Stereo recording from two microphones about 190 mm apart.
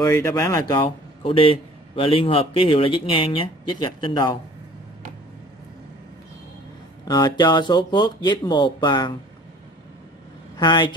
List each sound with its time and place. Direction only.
0.0 s speech: 20° left (ahead or behind)
7.1 s speech: 20° left (ahead or behind)
10.6 s speech: 25° left (ahead or behind)